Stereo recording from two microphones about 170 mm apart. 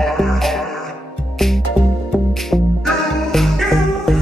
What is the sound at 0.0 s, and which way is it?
Music, centre (ahead or behind).